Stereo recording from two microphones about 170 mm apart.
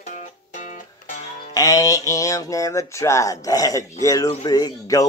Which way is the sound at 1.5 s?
20° left (ahead or behind).